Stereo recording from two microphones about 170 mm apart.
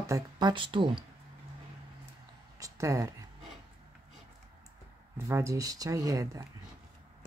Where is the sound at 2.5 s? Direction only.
20° right (ahead or behind).